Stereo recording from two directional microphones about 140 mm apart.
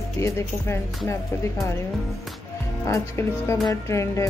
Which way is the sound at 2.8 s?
20° left (ahead or behind).